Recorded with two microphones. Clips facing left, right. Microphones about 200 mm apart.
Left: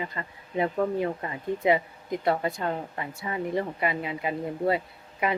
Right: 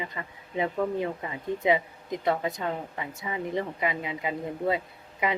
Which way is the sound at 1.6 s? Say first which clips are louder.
Left 1 dB; 20° right (ahead or behind).